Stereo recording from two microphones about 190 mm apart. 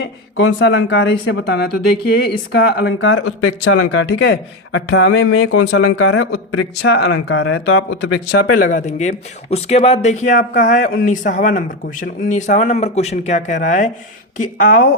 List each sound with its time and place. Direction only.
0.0 s speech: 70° left (ahead or behind); by 3.8 s 90° left
4.2 s speech: 80° left
8.5 s speech: 45° left (ahead or behind)